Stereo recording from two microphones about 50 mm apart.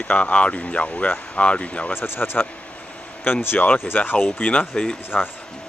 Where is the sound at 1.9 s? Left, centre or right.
Left.